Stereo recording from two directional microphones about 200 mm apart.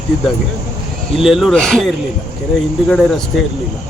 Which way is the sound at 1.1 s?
Centre (ahead or behind).